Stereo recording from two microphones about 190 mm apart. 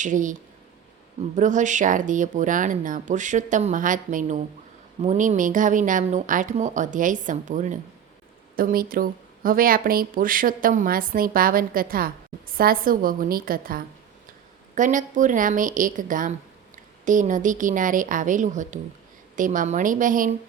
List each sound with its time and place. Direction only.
0.0 s speech: 40° right (ahead or behind)
1.4 s speech: 40° right (ahead or behind)